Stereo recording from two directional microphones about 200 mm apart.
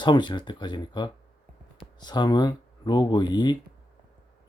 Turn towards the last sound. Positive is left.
turn(degrees=20)  # may be behind; listen again after turning